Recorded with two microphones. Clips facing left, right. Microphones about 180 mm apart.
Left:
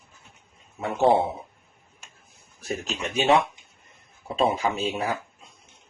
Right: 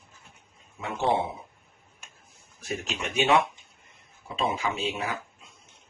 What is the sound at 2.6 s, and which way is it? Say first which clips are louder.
A man's voice: left 2 dB; 35° left (ahead or behind).